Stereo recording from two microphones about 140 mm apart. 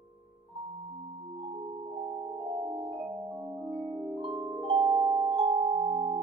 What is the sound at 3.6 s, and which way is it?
Music, 25° right (ahead or behind).